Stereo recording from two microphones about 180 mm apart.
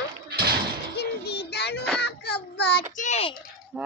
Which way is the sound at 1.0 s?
65° left (ahead or behind).